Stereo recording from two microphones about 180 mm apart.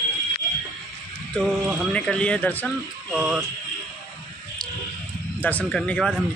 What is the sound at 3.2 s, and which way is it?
Speech, 5° right (ahead or behind).